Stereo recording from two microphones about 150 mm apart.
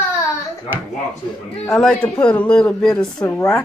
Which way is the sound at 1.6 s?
5° left (ahead or behind).